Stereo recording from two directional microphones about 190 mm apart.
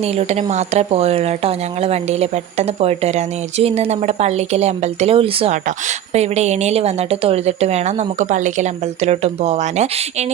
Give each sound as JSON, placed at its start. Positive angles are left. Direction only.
{"t": 0.2, "sound": "speech", "side_deg": -35}